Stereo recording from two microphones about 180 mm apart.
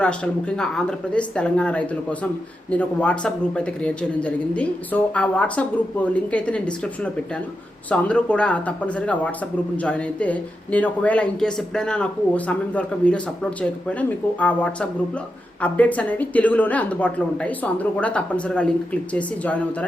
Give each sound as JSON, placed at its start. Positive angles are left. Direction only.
{"t": 0.0, "sound": "speech", "side_deg": 5}